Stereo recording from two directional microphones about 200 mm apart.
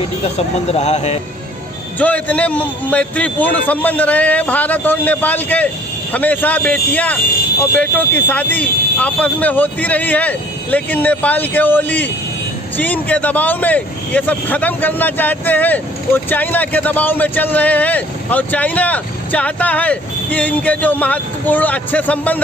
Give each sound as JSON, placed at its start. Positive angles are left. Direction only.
{"t": 0.2, "sound": "speech", "side_deg": 30}
{"t": 2.0, "sound": "a man's voice", "side_deg": 10}